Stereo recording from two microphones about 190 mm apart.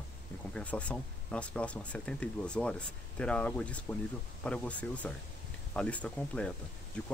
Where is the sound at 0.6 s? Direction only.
5° left (ahead or behind).